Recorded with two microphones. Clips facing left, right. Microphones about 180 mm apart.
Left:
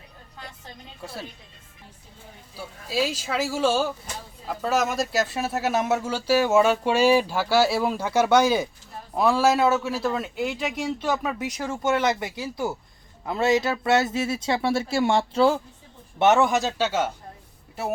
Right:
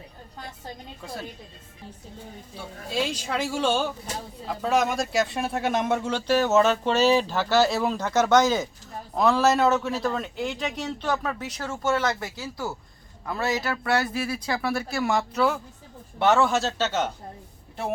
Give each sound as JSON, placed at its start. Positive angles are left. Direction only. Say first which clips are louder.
{"t": 1.0, "sound": "speech", "louder": "even", "side_deg": 5}
{"t": 2.6, "sound": "speech", "louder": "left 2 dB", "side_deg": 5}